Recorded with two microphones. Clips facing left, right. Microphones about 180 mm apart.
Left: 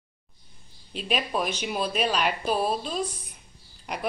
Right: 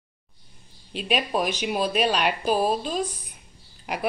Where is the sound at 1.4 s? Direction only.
Centre (ahead or behind).